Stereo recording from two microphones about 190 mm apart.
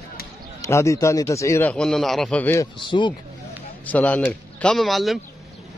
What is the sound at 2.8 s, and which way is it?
Speech, 25° left (ahead or behind).